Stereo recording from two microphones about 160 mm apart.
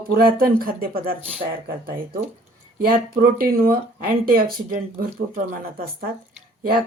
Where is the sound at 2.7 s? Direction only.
65° right (ahead or behind).